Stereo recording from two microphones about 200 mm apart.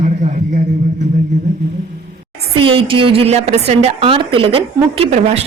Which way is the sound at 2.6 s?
25° right (ahead or behind).